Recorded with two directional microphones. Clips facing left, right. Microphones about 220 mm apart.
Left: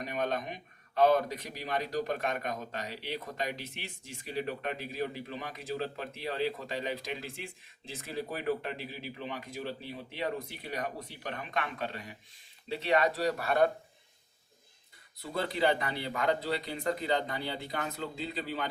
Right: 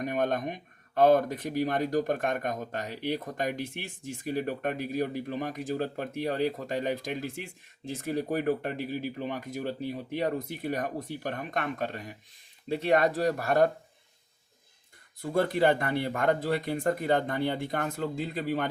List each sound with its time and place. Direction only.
0.0 s speech: 50° right (ahead or behind)
15.2 s speech: 50° right (ahead or behind)